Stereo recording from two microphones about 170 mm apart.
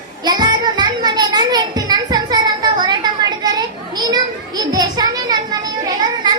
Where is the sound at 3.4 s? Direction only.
25° right (ahead or behind).